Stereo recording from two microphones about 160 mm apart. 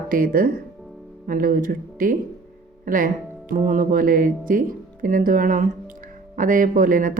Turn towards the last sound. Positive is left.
turn(degrees=-60)  # may be behind; listen again after turning